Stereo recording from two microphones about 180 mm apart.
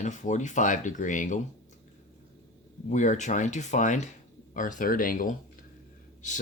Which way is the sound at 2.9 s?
45° left (ahead or behind).